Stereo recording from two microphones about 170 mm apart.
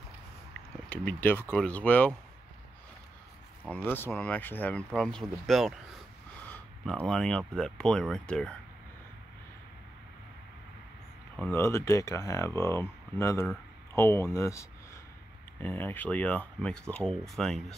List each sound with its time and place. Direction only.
0.8 s speech: 10° left (ahead or behind)
3.6 s speech: 10° left (ahead or behind)
6.4 s a sound: 10° left (ahead or behind)
7.1 s speech: 5° left (ahead or behind)
11.3 s speech: 10° left (ahead or behind)